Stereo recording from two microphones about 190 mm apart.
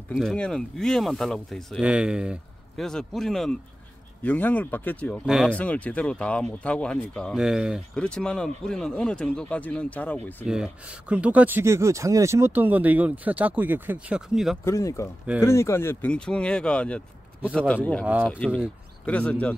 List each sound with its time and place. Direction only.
0.1 s speech: centre (ahead or behind)
5.2 s speech: 5° right (ahead or behind)
5.6 s speech: 5° left (ahead or behind)
10.4 s speech: 5° right (ahead or behind)
14.6 s speech: 15° left (ahead or behind)